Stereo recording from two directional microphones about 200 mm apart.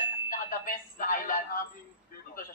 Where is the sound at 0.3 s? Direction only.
45° left (ahead or behind).